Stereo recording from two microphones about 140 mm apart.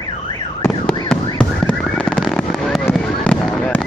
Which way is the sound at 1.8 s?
5° left (ahead or behind).